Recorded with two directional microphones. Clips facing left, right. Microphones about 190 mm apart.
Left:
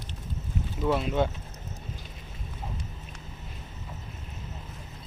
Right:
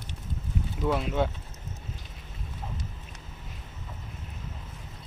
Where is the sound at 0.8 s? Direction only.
5° left (ahead or behind).